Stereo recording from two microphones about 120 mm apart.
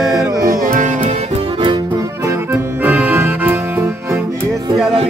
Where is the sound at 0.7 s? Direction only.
90° right.